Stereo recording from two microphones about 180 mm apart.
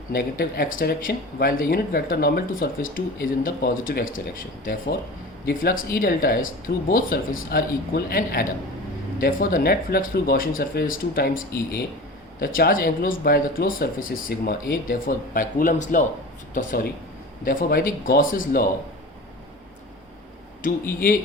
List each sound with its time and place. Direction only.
0.1 s speech: 55° left (ahead or behind)
5.5 s speech: 55° left (ahead or behind)
21.0 s speech: 50° left (ahead or behind)